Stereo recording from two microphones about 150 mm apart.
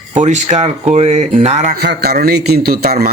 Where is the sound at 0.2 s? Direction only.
50° right (ahead or behind).